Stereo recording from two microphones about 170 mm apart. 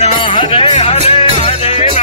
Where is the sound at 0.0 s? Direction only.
35° left (ahead or behind).